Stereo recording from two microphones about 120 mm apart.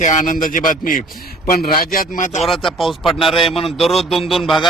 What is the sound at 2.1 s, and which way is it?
Speech, 90° left.